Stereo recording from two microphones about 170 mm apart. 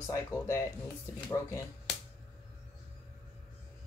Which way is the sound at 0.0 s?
15° left (ahead or behind).